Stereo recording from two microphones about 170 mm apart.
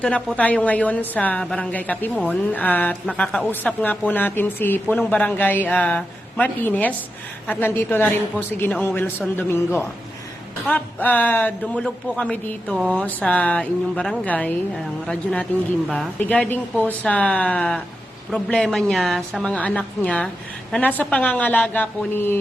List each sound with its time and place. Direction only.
0.0 s a man's voice: 5° left (ahead or behind)